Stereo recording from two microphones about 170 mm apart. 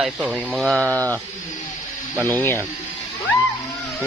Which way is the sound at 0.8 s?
15° right (ahead or behind).